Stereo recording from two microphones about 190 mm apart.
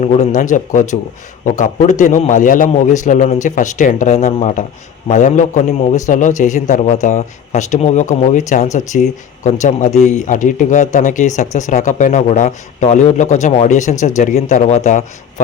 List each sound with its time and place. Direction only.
0.0 s speech: 35° left (ahead or behind)